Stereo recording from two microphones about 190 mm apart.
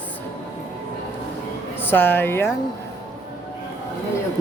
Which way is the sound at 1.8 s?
10° left (ahead or behind).